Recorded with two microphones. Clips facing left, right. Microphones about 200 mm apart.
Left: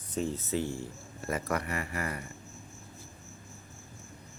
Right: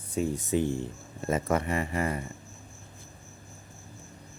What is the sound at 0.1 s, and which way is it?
Speech, 10° right (ahead or behind).